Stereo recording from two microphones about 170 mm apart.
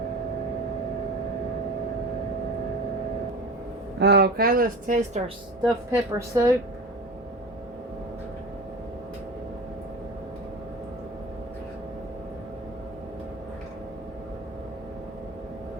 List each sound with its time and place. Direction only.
4.0 s speech: 75° right (ahead or behind); by 5.2 s 50° right (ahead or behind)
5.6 s a woman's voice: 20° right (ahead or behind)